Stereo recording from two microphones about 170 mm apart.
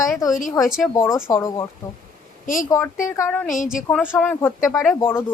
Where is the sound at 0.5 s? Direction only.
Centre (ahead or behind).